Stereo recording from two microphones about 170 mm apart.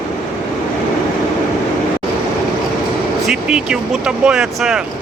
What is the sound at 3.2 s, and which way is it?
Speech, 5° right (ahead or behind).